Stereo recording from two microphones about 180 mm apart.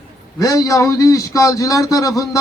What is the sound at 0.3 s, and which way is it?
Speech, 20° left (ahead or behind).